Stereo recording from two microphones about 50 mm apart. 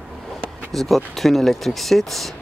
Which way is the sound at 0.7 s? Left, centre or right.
Centre.